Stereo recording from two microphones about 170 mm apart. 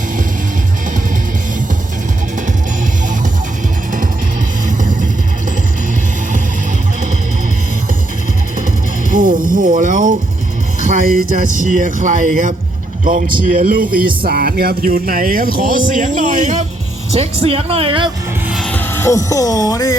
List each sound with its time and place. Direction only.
4.8 s music: 50° right (ahead or behind)
9.0 s music: 50° right (ahead or behind)
10.8 s speech: 50° right (ahead or behind); by 18.1 s 30° right (ahead or behind)
18.4 s music: centre (ahead or behind)
18.7 s speech: 10° left (ahead or behind)